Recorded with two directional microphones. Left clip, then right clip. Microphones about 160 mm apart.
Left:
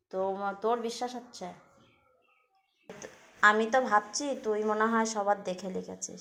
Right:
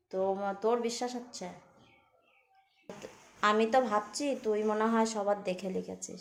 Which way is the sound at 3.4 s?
5° right (ahead or behind).